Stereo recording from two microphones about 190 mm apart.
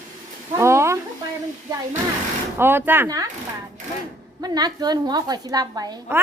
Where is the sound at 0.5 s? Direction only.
15° right (ahead or behind).